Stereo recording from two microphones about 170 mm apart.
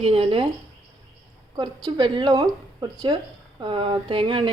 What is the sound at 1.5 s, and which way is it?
A woman's voice, 25° right (ahead or behind).